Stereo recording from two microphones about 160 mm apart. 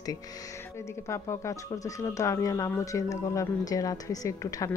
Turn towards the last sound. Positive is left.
turn(degrees=20)  # may be behind; listen again after turning